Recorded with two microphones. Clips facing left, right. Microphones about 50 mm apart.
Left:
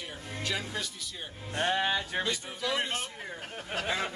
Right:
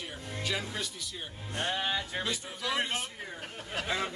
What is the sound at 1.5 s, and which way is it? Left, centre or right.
Music, left.